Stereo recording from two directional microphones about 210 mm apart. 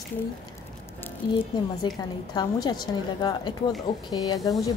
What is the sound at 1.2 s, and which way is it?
A woman's voice, 20° left (ahead or behind).